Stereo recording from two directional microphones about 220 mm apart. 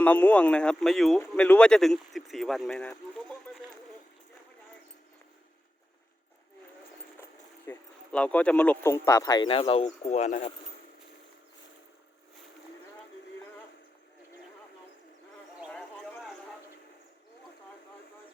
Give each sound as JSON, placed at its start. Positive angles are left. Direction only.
{"t": 0.0, "sound": "speech", "side_deg": 5}
{"t": 7.7, "sound": "speech", "side_deg": 5}